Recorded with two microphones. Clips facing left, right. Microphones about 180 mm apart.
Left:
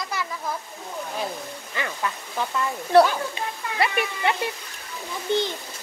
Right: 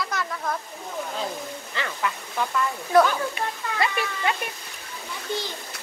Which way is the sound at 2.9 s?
30° left (ahead or behind).